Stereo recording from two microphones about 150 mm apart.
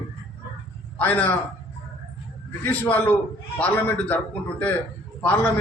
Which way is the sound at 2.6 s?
10° left (ahead or behind).